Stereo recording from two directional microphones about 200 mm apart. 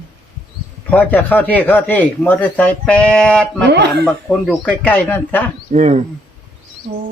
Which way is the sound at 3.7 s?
55° right (ahead or behind).